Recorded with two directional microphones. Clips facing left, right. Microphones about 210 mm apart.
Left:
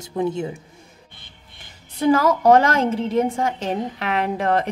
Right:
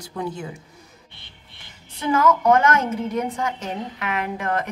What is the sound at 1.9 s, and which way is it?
A woman's voice, 35° left (ahead or behind).